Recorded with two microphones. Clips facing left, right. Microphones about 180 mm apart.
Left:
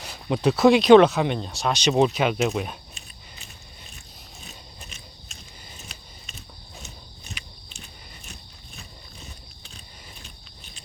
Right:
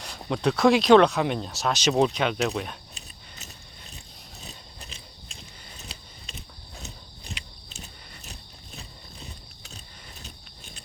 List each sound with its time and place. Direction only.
0.0 s speech: 5° left (ahead or behind)
4.4 s gears: 35° right (ahead or behind)
8.3 s a sound: 35° right (ahead or behind)